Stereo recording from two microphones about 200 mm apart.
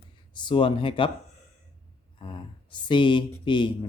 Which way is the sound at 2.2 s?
25° left (ahead or behind).